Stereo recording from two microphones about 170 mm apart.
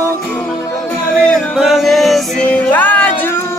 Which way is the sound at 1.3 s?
Centre (ahead or behind).